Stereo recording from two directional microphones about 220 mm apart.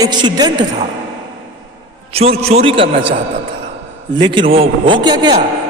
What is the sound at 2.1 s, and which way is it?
Speech, 25° right (ahead or behind).